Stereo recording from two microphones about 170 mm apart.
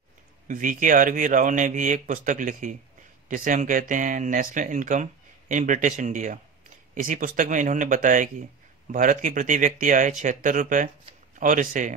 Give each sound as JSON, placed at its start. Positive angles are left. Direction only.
{"t": 0.5, "sound": "speech", "side_deg": -50}